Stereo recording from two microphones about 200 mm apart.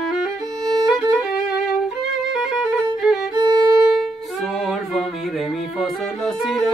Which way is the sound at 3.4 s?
20° right (ahead or behind).